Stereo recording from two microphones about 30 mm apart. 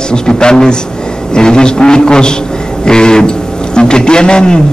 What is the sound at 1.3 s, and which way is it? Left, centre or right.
A man's voice, left.